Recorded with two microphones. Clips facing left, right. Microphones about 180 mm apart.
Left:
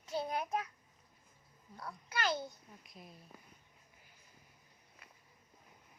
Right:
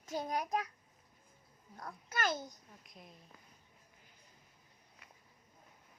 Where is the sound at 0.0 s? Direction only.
45° right (ahead or behind).